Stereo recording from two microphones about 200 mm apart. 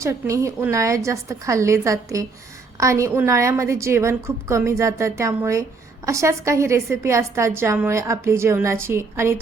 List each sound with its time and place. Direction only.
0.0 s a woman's voice: 15° right (ahead or behind)